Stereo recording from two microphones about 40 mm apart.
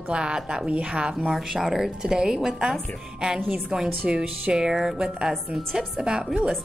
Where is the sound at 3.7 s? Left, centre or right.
Centre.